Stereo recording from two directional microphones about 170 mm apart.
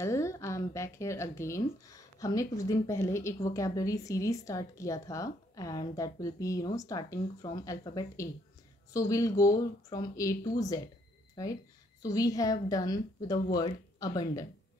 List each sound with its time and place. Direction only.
0.0 s a woman's voice: 15° left (ahead or behind)